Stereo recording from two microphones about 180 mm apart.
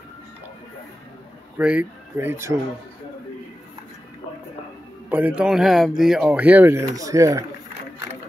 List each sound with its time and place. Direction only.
1.6 s speech: 5° right (ahead or behind)
5.1 s speech: 5° right (ahead or behind)